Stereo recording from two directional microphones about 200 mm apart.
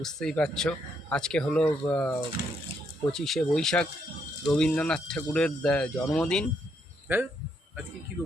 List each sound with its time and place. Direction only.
0.0 s speech: centre (ahead or behind)
7.1 s speech: 10° right (ahead or behind)
8.1 s music: 5° right (ahead or behind)